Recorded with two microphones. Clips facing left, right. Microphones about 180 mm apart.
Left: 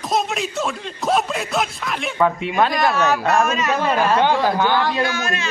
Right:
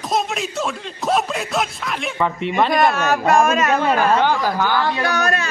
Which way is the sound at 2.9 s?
50° right (ahead or behind).